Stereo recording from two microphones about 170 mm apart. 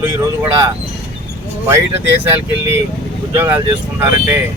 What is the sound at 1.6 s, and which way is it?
Speech, 15° right (ahead or behind).